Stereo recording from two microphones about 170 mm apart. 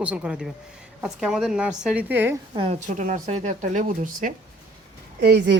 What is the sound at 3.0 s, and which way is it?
Speech, 50° right (ahead or behind).